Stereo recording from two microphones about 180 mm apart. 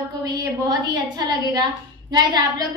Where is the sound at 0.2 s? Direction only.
20° right (ahead or behind).